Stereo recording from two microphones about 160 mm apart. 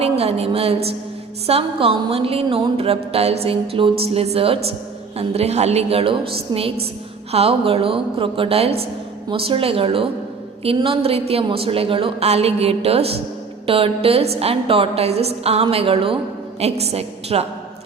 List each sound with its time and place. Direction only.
0.0 s a woman's voice: 40° right (ahead or behind)